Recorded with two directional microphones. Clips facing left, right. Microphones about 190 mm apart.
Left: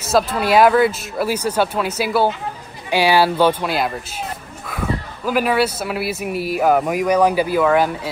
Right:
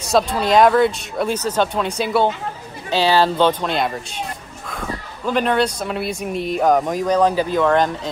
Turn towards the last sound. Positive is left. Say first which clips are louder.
# left 1 dB
turn(degrees=5)  # may be behind; listen again after turning